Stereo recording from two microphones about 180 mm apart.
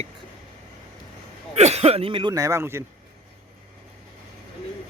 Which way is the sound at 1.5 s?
35° right (ahead or behind).